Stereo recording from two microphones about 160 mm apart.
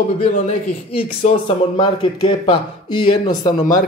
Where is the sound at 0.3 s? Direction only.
50° left (ahead or behind).